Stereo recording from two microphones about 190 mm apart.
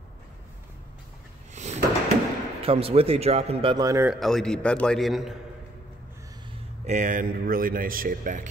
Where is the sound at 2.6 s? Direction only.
30° right (ahead or behind).